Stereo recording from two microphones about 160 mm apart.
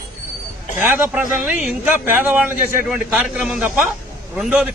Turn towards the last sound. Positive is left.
turn(degrees=-5)  # may be behind; listen again after turning